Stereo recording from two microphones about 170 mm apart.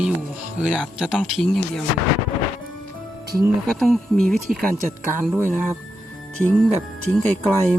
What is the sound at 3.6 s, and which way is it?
Speech, centre (ahead or behind).